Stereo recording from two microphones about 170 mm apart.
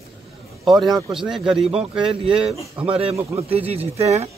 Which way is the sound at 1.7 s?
35° right (ahead or behind).